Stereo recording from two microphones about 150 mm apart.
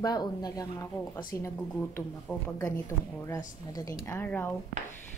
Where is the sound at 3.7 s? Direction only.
25° left (ahead or behind).